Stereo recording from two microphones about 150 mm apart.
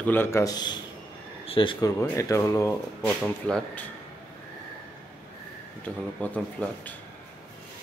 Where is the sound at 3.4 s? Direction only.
5° left (ahead or behind).